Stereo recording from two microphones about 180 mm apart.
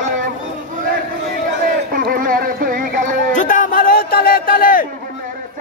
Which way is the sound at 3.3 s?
45° left (ahead or behind).